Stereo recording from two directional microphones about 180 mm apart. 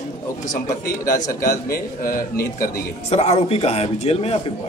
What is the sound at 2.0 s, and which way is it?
Speech, 50° left (ahead or behind).